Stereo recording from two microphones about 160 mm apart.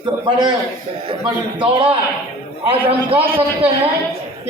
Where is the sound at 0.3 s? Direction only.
30° right (ahead or behind).